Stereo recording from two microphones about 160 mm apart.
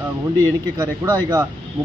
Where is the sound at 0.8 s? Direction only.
20° right (ahead or behind).